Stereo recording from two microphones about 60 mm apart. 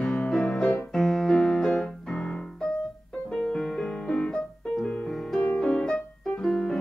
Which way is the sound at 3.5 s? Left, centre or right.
Centre.